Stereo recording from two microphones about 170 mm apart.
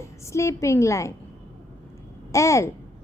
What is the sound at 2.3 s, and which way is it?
Speech, 15° left (ahead or behind).